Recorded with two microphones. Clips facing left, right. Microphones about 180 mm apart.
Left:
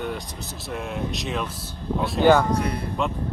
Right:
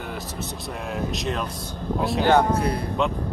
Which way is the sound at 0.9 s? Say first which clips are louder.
Right 3 dB; centre (ahead or behind).